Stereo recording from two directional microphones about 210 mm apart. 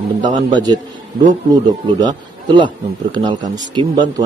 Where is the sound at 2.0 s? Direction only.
20° right (ahead or behind).